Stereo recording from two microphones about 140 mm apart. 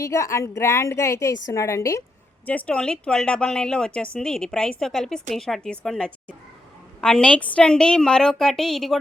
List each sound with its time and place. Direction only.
0.0 s a woman's voice: 20° left (ahead or behind)
2.5 s a woman's voice: 10° left (ahead or behind)